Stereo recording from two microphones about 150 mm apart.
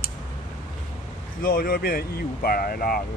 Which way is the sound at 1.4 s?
75° left (ahead or behind).